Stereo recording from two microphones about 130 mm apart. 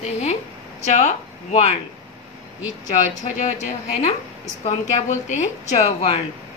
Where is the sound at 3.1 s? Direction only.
70° left (ahead or behind).